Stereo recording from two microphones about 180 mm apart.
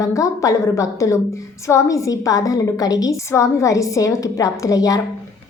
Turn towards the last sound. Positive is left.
turn(degrees=20)  # may be behind; listen again after turning